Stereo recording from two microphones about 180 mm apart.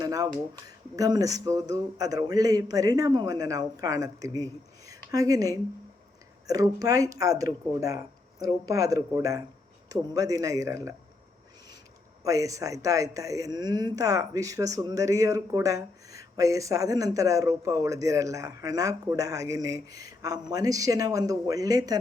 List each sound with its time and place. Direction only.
0.0 s a sound: 20° right (ahead or behind)
0.9 s speech: 20° right (ahead or behind)
12.2 s speech: 20° right (ahead or behind)